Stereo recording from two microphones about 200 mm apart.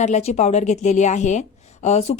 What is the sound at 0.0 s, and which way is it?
A woman's voice, 35° left (ahead or behind).